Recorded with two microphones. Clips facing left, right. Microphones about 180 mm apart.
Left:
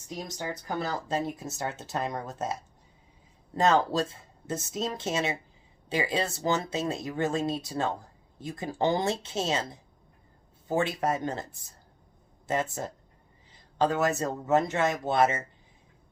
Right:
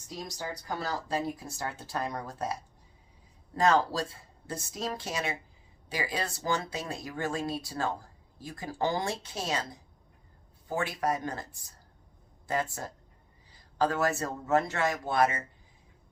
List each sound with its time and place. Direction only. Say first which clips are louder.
0.3 s speech: left 4 dB; 20° left (ahead or behind)
10.7 s speech: left 3 dB; 25° left (ahead or behind)